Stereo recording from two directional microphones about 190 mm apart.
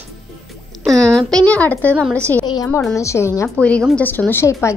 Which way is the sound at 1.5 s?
10° left (ahead or behind).